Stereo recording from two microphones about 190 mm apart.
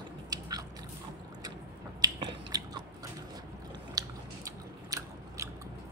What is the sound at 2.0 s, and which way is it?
Finger snapping, 20° right (ahead or behind).